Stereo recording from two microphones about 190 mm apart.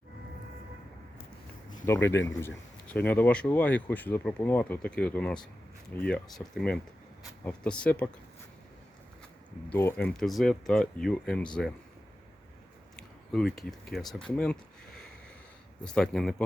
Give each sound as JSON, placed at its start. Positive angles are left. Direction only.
{"t": 1.9, "sound": "a man's voice", "side_deg": 10}
{"t": 9.7, "sound": "speech", "side_deg": 10}
{"t": 13.3, "sound": "speech", "side_deg": 0}